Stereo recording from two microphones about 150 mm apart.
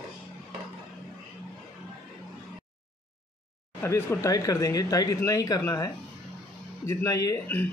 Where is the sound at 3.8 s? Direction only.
15° left (ahead or behind).